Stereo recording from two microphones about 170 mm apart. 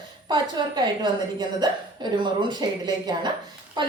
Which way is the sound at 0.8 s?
25° right (ahead or behind).